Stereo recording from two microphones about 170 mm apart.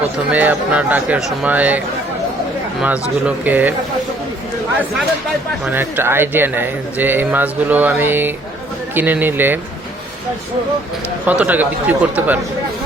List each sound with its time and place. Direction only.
0.3 s speech: 10° right (ahead or behind)
2.8 s speech: 10° right (ahead or behind)
5.6 s speech: 10° right (ahead or behind)
11.3 s speech: 10° right (ahead or behind)